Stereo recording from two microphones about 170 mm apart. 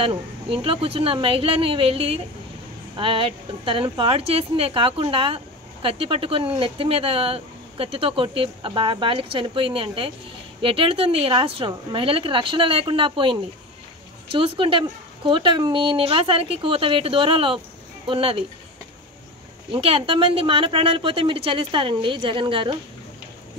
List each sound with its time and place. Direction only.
0.0 s a woman's voice: 35° right (ahead or behind)
19.7 s a woman's voice: 30° right (ahead or behind)